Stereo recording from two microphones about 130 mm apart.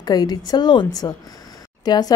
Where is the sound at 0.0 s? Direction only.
30° left (ahead or behind).